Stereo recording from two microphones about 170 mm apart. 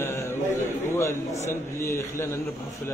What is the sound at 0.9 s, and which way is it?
A man's voice, 15° left (ahead or behind).